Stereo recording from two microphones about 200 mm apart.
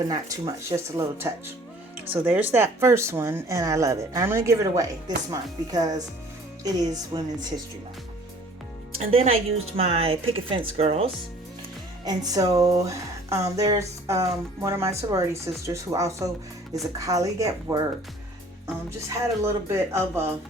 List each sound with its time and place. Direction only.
0.1 s a woman's voice: 15° right (ahead or behind)
9.0 s a woman's voice: 30° right (ahead or behind)
12.0 s speech: 20° right (ahead or behind)
19.4 s speech: 15° right (ahead or behind)